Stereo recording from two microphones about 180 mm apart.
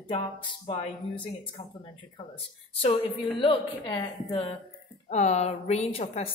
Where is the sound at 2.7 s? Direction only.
30° left (ahead or behind).